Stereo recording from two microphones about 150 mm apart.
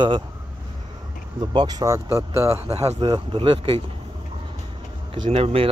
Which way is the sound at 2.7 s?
45° right (ahead or behind).